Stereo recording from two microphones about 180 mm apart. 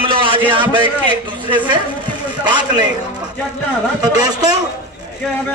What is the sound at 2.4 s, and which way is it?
Speech, 25° right (ahead or behind).